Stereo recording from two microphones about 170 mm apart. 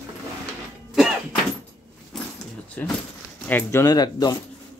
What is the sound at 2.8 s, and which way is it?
A man's voice, 10° left (ahead or behind).